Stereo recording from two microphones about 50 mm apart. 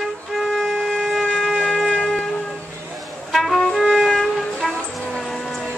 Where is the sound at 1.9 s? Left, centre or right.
Centre.